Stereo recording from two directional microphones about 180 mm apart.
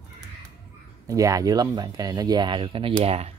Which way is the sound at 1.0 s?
20° right (ahead or behind).